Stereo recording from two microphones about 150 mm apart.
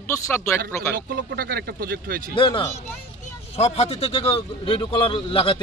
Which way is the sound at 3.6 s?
45° left (ahead or behind).